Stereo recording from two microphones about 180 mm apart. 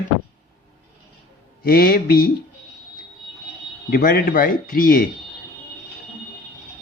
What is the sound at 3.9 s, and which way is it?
Speech, 55° left (ahead or behind).